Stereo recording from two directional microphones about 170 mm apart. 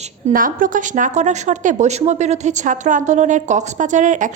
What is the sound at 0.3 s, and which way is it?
Speech, 55° right (ahead or behind).